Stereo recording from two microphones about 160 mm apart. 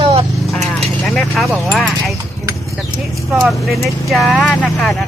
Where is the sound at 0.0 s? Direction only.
35° right (ahead or behind).